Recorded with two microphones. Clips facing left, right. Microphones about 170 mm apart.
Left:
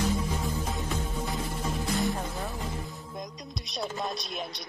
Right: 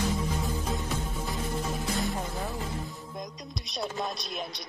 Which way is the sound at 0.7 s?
Centre (ahead or behind).